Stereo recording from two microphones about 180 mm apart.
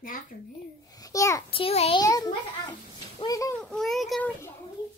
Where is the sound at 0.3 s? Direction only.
50° left (ahead or behind).